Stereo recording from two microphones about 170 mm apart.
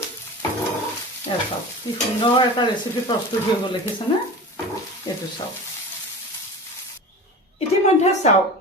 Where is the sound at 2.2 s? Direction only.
30° left (ahead or behind).